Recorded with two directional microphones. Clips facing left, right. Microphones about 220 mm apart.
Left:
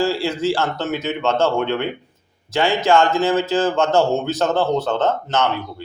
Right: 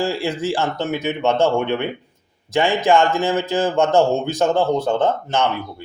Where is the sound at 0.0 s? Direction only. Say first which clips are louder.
Left 2 dB; 15° right (ahead or behind).